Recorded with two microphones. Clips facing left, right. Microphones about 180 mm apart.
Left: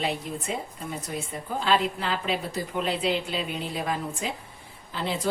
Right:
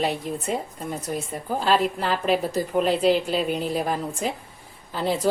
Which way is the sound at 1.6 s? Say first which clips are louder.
Right 3 dB; 40° right (ahead or behind).